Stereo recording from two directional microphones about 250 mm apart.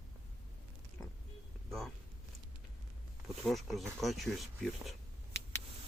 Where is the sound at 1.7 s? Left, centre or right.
Centre.